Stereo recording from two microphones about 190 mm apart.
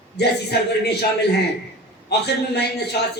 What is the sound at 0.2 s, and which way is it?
Speech, 60° left (ahead or behind).